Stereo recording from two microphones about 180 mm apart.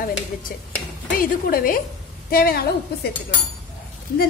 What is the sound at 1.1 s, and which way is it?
A woman's voice, 50° left (ahead or behind).